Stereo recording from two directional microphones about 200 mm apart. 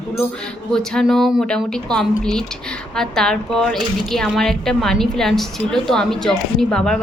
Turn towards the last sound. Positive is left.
turn(degrees=5)  # may be behind; listen again after turning